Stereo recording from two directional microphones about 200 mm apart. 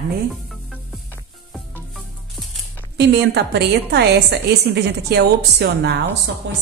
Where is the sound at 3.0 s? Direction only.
60° right (ahead or behind).